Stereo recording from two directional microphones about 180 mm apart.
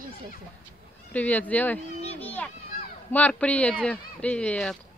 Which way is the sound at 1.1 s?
10° left (ahead or behind).